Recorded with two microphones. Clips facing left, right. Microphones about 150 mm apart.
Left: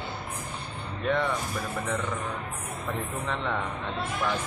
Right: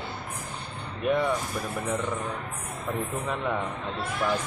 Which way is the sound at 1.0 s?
10° right (ahead or behind).